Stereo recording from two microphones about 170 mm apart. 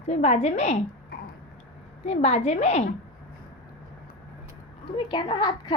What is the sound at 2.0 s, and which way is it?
Speech, 40° left (ahead or behind).